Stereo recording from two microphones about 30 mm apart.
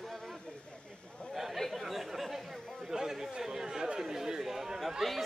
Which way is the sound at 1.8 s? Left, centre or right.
Centre.